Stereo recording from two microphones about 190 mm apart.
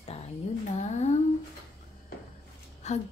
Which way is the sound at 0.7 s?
35° left (ahead or behind).